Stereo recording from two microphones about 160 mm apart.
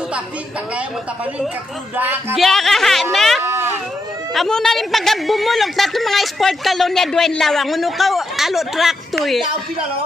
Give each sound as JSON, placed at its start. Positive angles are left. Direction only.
{"t": 2.0, "sound": "speech", "side_deg": -10}
{"t": 2.3, "sound": "a woman's voice", "side_deg": 0}
{"t": 3.4, "sound": "a sound", "side_deg": -15}
{"t": 4.3, "sound": "a woman's voice", "side_deg": 0}